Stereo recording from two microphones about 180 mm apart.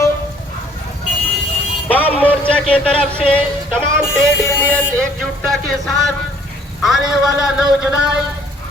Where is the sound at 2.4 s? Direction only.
5° left (ahead or behind).